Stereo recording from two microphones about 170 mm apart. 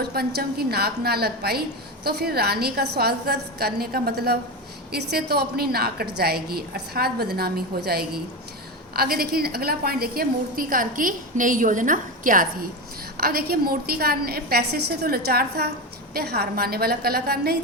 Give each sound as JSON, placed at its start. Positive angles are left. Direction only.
{"t": 0.0, "sound": "a woman's voice", "side_deg": -70}
{"t": 13.1, "sound": "a woman's voice", "side_deg": -65}